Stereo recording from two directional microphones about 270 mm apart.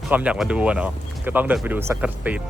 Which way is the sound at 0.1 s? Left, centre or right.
Centre.